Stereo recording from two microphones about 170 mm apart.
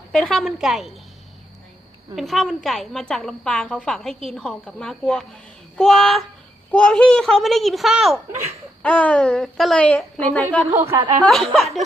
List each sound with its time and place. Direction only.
0.1 s a woman's voice: centre (ahead or behind)
2.1 s a woman's voice: centre (ahead or behind)
10.7 s a woman's voice: 15° right (ahead or behind)
11.3 s a woman's voice: centre (ahead or behind)